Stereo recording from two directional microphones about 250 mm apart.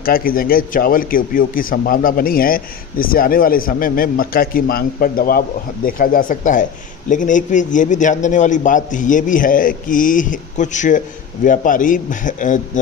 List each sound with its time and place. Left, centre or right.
0.0 s a man's voice: left